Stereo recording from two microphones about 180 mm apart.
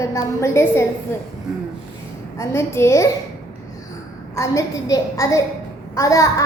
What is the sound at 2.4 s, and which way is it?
Speech, 15° left (ahead or behind).